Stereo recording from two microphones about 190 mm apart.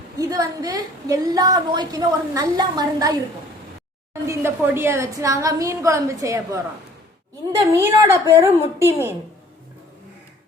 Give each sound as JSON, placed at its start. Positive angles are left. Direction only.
{"t": 0.2, "sound": "a woman's voice", "side_deg": -20}
{"t": 7.8, "sound": "a woman's voice", "side_deg": -10}